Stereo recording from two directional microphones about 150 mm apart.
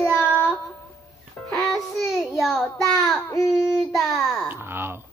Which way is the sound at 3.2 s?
20° left (ahead or behind).